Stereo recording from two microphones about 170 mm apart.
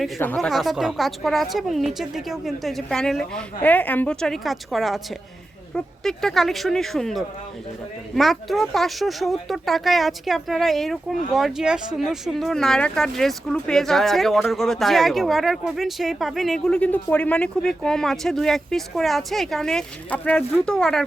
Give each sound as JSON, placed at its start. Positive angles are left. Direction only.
{"t": 0.3, "sound": "speech", "side_deg": 0}